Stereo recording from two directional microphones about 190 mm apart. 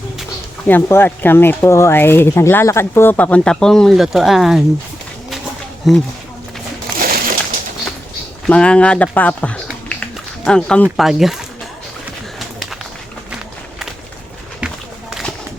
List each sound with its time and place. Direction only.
0.7 s speech: 10° left (ahead or behind)
5.8 s speech: centre (ahead or behind)
7.0 s crushing: 50° right (ahead or behind)
8.4 s speech: 5° left (ahead or behind)
9.6 s a sound: 5° left (ahead or behind)
10.9 s speech: centre (ahead or behind)
14.6 s run: 5° right (ahead or behind)
15.1 s a sound: centre (ahead or behind)